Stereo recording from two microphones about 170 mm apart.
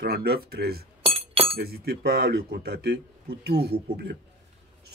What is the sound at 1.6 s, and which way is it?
Speech, 65° right (ahead or behind).